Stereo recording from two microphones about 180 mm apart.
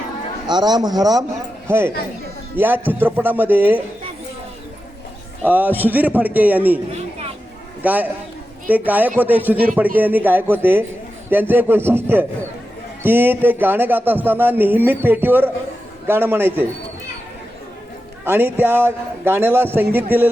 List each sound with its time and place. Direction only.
0.4 s speech: 25° right (ahead or behind)
5.5 s speech: 10° right (ahead or behind)
7.8 s a man's voice: 10° right (ahead or behind)
18.3 s speech: 10° right (ahead or behind)